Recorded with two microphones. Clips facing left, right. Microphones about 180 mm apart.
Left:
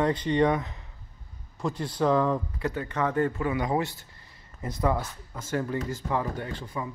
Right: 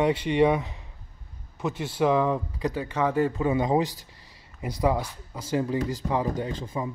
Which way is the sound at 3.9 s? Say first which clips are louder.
Right 2 dB; 90° right.